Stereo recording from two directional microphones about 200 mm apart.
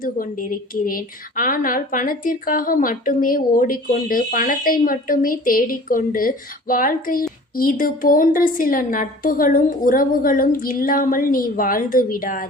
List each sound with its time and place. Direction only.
0.0 s speech: 45° left (ahead or behind)